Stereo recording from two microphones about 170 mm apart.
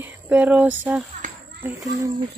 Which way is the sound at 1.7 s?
20° right (ahead or behind).